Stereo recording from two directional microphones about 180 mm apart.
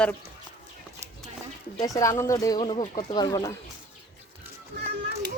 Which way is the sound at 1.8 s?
20° left (ahead or behind).